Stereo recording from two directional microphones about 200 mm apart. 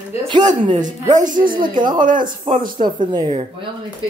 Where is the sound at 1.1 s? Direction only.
40° right (ahead or behind).